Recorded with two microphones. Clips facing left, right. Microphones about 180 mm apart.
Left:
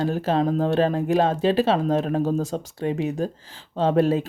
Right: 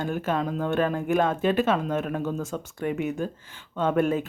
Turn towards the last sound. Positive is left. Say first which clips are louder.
# left 4 dB
turn(degrees=30)  # may be behind; listen again after turning